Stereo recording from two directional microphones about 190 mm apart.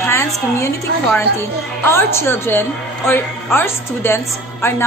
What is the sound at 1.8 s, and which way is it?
A woman's voice, 15° left (ahead or behind).